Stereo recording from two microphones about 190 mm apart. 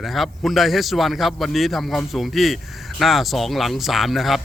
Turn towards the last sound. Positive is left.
turn(degrees=0)  # may be behind; listen again after turning